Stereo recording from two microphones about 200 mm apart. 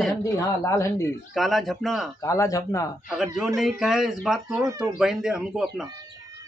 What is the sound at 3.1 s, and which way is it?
A man's voice, centre (ahead or behind).